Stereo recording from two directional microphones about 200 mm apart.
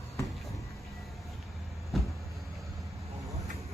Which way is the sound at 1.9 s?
Centre (ahead or behind).